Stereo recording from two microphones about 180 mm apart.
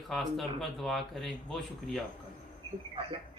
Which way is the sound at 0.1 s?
Centre (ahead or behind).